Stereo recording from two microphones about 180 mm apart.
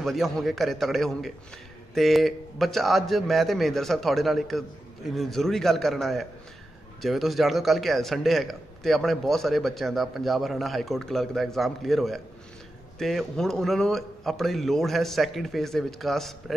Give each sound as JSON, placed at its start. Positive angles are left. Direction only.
{"t": 0.0, "sound": "a man's voice", "side_deg": 0}